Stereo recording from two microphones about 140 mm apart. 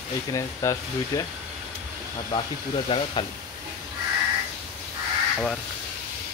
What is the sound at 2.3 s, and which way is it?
Speech, 30° left (ahead or behind).